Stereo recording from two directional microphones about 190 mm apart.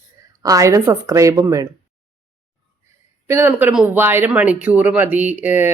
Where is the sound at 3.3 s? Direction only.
10° right (ahead or behind).